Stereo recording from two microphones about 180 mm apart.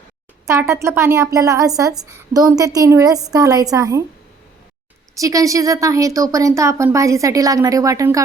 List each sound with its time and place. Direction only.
0.4 s a woman's voice: 15° right (ahead or behind)
5.1 s speech: 20° right (ahead or behind)